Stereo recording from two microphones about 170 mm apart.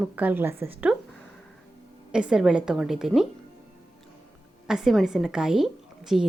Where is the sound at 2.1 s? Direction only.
5° right (ahead or behind).